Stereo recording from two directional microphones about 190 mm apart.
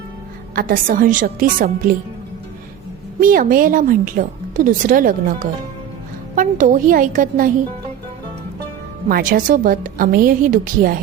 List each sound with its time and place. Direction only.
0.5 s a woman's voice: 50° right (ahead or behind)
3.2 s a woman's voice: 45° right (ahead or behind)
9.0 s a woman's voice: 50° right (ahead or behind)